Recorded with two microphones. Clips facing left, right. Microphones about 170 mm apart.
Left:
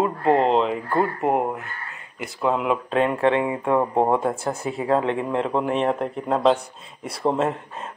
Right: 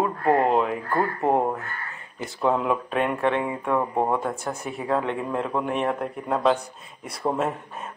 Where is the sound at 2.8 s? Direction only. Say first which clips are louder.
Left 4 dB; 30° left (ahead or behind).